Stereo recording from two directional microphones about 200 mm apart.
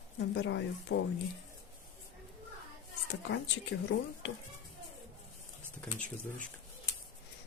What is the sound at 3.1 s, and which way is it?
Speech, 65° left (ahead or behind).